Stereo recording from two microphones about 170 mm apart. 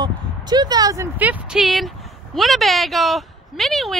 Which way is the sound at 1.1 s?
10° right (ahead or behind).